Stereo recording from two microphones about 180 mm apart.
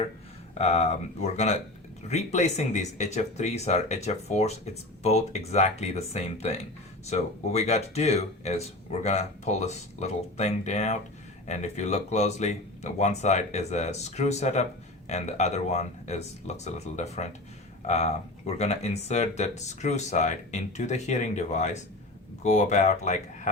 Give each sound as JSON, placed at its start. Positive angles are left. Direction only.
{"t": 0.6, "sound": "speech", "side_deg": 40}